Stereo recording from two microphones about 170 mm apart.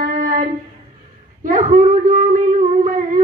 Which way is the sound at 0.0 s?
50° right (ahead or behind).